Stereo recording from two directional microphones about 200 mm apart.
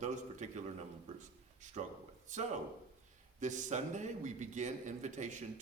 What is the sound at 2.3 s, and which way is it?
A man's voice, 40° right (ahead or behind).